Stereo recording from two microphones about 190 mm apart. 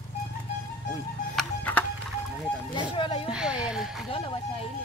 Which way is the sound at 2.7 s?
25° left (ahead or behind).